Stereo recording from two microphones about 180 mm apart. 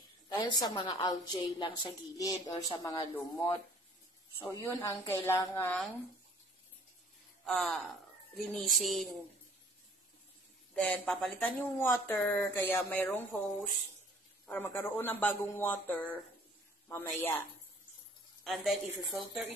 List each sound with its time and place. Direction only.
0.3 s a woman's voice: 25° left (ahead or behind)
4.6 s speech: 15° left (ahead or behind)
7.4 s a woman's voice: centre (ahead or behind)
10.7 s speech: 5° left (ahead or behind)
14.4 s speech: 10° left (ahead or behind)
18.4 s a woman's voice: centre (ahead or behind)